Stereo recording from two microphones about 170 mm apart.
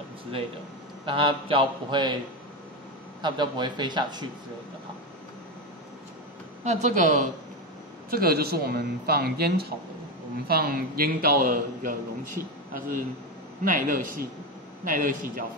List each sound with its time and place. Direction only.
1.0 s a man's voice: 30° right (ahead or behind)
3.2 s a man's voice: 25° right (ahead or behind)
6.6 s a woman's voice: 45° right (ahead or behind)
8.1 s a woman's voice: 65° right (ahead or behind)